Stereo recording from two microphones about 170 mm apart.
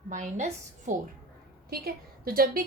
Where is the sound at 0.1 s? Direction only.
45° right (ahead or behind).